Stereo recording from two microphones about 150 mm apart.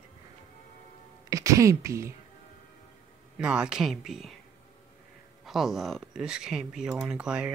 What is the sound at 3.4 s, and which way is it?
Speech, 5° right (ahead or behind).